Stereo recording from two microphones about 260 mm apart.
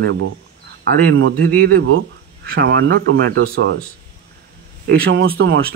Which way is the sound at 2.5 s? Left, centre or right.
Right.